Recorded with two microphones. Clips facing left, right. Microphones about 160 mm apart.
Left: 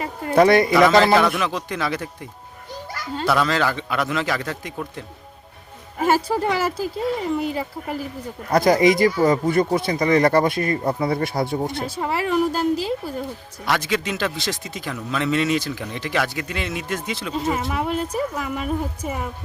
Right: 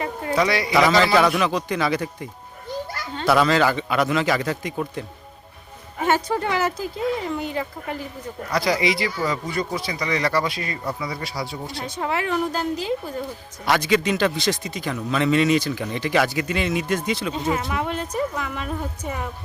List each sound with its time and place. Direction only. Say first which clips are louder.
0.3 s a man's voice: left 8 dB; 55° left (ahead or behind)
1.1 s a man's voice: even; centre (ahead or behind)
3.2 s a man's voice: right 2 dB; centre (ahead or behind)
6.0 s a man's voice: left 2 dB; 5° left (ahead or behind)
8.4 s speech: left 6 dB; 50° left (ahead or behind)
11.9 s a man's voice: left 2 dB; 5° left (ahead or behind)